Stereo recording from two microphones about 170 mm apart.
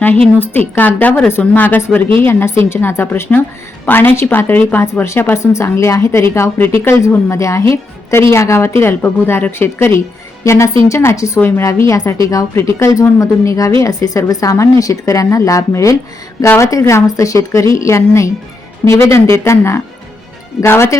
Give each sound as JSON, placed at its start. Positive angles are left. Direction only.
{"t": 0.3, "sound": "a woman's voice", "side_deg": 10}